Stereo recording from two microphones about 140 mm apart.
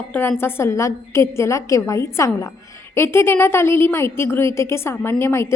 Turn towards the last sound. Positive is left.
turn(degrees=15)  # may be behind; listen again after turning